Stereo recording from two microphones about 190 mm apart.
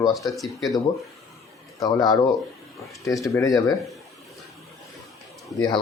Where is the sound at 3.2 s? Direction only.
15° left (ahead or behind).